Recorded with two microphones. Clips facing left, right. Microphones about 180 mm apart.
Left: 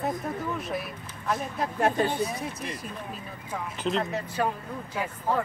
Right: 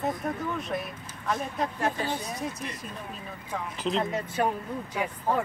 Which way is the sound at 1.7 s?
55° left (ahead or behind).